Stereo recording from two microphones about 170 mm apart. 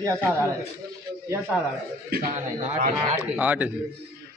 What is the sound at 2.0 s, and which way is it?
Speech, 60° right (ahead or behind).